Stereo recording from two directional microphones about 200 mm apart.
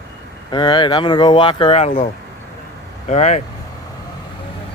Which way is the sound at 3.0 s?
35° left (ahead or behind).